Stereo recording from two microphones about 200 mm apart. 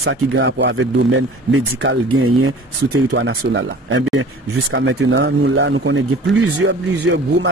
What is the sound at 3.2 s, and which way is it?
Speech, 70° right (ahead or behind).